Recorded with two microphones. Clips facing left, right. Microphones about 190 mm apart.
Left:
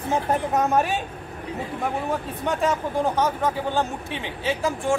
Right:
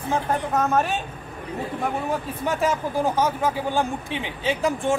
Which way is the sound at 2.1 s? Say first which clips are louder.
Even; 5° right (ahead or behind).